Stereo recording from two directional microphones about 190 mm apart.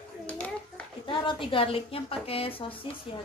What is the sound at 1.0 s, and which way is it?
A woman's voice, 25° left (ahead or behind).